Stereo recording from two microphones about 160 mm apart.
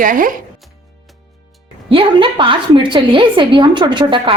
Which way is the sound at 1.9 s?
35° right (ahead or behind).